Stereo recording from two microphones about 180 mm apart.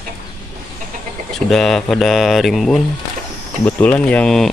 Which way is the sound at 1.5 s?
Centre (ahead or behind).